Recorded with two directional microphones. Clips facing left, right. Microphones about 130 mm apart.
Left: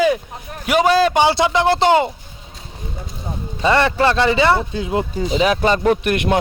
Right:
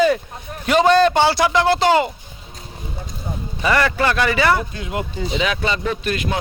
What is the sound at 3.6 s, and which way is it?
A man's voice, 25° left (ahead or behind).